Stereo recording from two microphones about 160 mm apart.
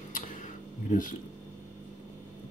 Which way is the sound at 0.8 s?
55° left (ahead or behind).